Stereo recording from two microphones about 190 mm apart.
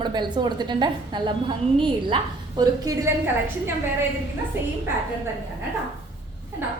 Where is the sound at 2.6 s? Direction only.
20° right (ahead or behind).